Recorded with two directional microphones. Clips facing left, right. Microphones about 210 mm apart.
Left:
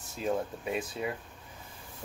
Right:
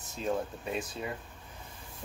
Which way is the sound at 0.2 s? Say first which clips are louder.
Left 1 dB; 5° left (ahead or behind).